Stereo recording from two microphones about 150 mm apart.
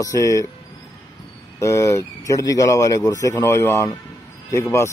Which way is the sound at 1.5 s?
20° left (ahead or behind).